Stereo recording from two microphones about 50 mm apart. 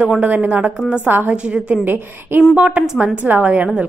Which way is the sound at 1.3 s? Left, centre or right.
Right.